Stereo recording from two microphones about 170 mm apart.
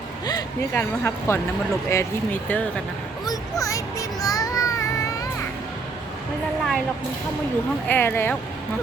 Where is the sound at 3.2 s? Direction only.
20° left (ahead or behind).